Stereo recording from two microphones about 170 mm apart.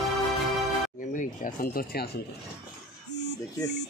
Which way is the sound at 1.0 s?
50° left (ahead or behind).